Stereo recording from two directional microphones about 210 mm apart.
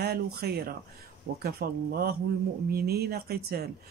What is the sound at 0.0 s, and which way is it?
Speech, 50° right (ahead or behind).